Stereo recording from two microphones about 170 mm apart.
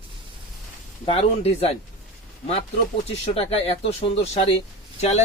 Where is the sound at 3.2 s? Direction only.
35° left (ahead or behind).